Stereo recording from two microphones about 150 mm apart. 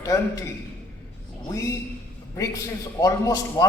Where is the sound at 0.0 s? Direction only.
20° left (ahead or behind).